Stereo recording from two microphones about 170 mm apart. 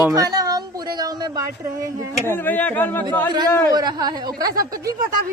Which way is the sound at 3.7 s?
25° right (ahead or behind).